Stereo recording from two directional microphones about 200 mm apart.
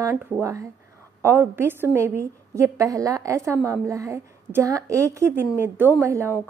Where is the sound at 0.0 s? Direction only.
15° right (ahead or behind).